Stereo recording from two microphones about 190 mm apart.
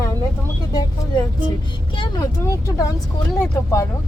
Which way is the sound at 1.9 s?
25° left (ahead or behind).